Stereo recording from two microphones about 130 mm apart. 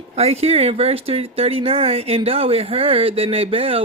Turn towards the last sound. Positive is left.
turn(degrees=-45)  # may be behind; listen again after turning